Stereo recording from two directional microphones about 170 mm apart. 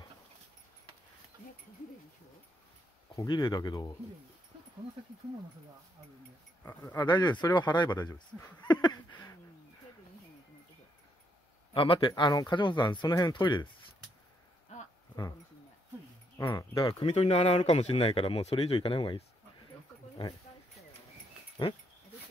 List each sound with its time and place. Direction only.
3.2 s speech: 25° left (ahead or behind)
6.6 s speech: 10° left (ahead or behind)
7.0 s speech: 25° left (ahead or behind)
8.7 s a sound: 25° left (ahead or behind)
11.7 s speech: 30° left (ahead or behind)
16.4 s speech: 25° left (ahead or behind)
17.0 s speech: 40° left (ahead or behind)
21.6 s speech: 25° left (ahead or behind)